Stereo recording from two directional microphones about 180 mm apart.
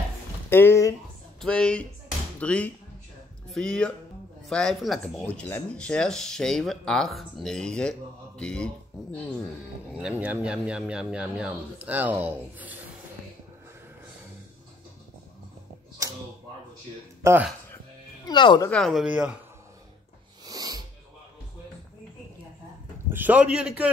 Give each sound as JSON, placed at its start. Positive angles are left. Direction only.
{"t": 0.5, "sound": "speech", "side_deg": 10}
{"t": 9.9, "sound": "speech", "side_deg": -5}
{"t": 17.2, "sound": "speech", "side_deg": -15}
{"t": 18.2, "sound": "speech", "side_deg": 25}
{"t": 18.7, "sound": "speech", "side_deg": 0}
{"t": 20.4, "sound": "sneeze", "side_deg": -20}
{"t": 23.0, "sound": "speech", "side_deg": -10}